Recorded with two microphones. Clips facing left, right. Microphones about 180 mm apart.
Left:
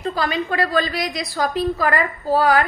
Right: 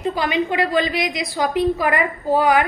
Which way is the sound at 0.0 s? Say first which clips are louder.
Right 2 dB; 15° right (ahead or behind).